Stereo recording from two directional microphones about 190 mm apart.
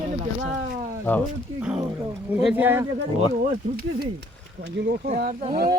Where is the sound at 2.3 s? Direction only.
5° right (ahead or behind).